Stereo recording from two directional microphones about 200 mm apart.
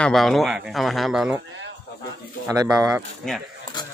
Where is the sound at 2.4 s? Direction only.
15° right (ahead or behind).